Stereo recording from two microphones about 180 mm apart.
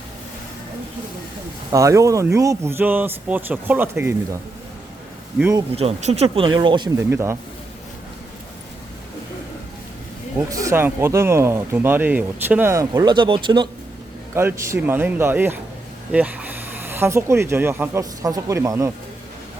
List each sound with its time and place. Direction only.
1.7 s speech: 15° right (ahead or behind)
5.7 s speech: 35° right (ahead or behind); by 7.3 s 15° right (ahead or behind)
10.3 s speech: 15° right (ahead or behind)
14.3 s speech: 15° right (ahead or behind)